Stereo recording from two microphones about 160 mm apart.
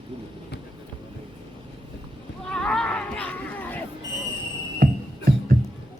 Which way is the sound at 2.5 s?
5° left (ahead or behind).